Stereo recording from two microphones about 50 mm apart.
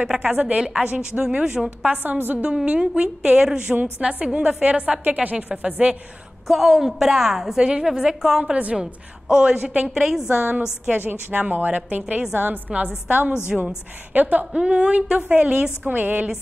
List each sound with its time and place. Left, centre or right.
0.0 s a woman's voice: right
2.0 s a woman's voice: right
2.4 s a woman's voice: centre
3.7 s a woman's voice: right
6.4 s a woman's voice: centre; by 9.8 s right
9.8 s a woman's voice: centre
11.0 s a woman's voice: right
13.5 s a woman's voice: centre
14.1 s a woman's voice: right
14.5 s a woman's voice: right
15.9 s a woman's voice: right